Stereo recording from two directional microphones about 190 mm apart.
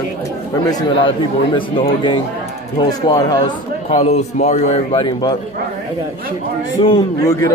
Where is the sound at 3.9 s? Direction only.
35° left (ahead or behind).